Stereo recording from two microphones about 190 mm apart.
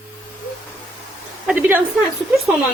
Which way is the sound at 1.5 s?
10° right (ahead or behind).